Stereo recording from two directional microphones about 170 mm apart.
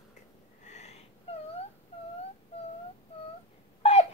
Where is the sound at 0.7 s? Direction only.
40° left (ahead or behind).